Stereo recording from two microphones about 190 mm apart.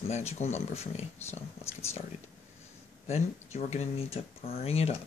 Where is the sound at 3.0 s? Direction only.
35° left (ahead or behind).